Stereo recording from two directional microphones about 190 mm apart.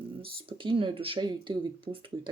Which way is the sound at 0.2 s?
30° right (ahead or behind).